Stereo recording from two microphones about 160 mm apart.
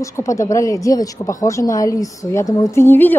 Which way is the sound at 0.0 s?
20° left (ahead or behind).